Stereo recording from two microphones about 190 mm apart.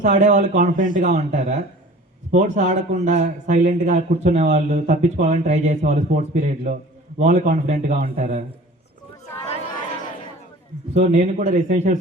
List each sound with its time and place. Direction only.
0.0 s speech: 40° right (ahead or behind)
10.9 s speech: 40° right (ahead or behind)